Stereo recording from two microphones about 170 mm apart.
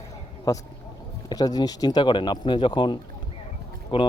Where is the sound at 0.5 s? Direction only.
20° left (ahead or behind).